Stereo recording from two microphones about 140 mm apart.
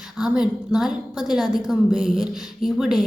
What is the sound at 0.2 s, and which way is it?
A woman's voice, 5° right (ahead or behind).